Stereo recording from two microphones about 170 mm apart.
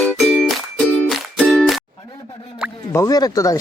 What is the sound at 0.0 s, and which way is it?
Music, centre (ahead or behind).